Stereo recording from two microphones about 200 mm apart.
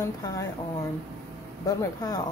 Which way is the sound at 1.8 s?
20° left (ahead or behind).